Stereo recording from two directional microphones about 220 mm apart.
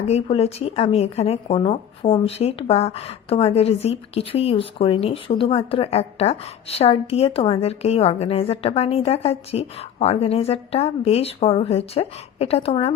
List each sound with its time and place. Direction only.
0.1 s speech: 25° left (ahead or behind)